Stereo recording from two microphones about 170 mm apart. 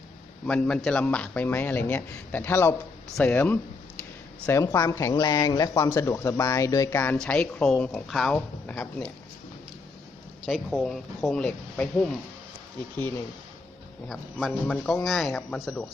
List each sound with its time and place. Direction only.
0.4 s speech: 5° left (ahead or behind)
10.4 s speech: centre (ahead or behind)